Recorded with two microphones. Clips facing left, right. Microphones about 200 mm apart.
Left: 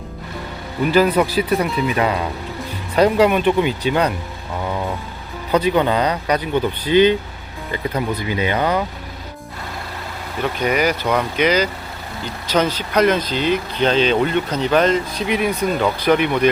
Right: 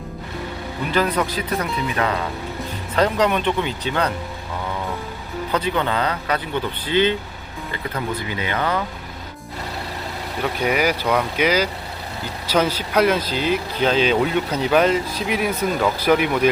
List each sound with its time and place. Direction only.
0.9 s speech: 10° left (ahead or behind)
2.9 s speech: 10° left (ahead or behind)
5.5 s speech: 15° left (ahead or behind)
10.4 s speech: 5° right (ahead or behind)